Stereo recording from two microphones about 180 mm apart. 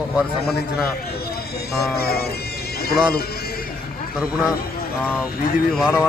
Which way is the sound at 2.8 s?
60° left (ahead or behind).